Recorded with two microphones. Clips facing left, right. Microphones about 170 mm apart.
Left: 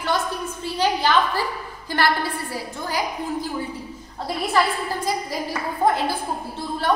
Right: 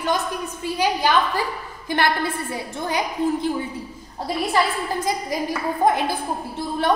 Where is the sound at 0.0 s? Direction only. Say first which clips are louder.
Right 1 dB; 15° right (ahead or behind).